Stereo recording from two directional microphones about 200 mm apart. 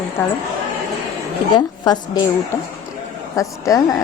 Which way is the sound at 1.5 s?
20° left (ahead or behind).